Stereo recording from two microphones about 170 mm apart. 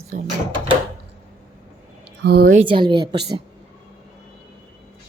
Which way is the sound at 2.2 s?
65° right (ahead or behind).